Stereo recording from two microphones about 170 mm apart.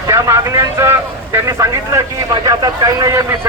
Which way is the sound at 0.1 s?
15° right (ahead or behind).